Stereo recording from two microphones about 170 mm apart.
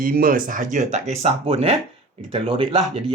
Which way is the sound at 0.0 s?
60° right (ahead or behind).